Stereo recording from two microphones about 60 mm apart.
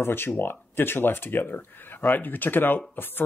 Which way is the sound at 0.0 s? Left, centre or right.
Left.